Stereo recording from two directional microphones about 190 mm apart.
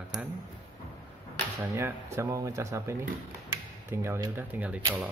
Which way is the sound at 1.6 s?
10° right (ahead or behind).